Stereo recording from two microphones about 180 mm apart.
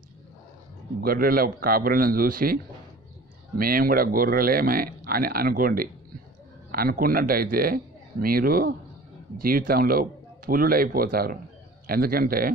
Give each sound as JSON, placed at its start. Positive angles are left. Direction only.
{"t": 1.0, "sound": "a man's voice", "side_deg": -55}